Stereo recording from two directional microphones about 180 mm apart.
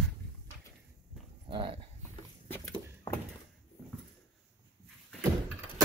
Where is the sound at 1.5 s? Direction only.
30° right (ahead or behind).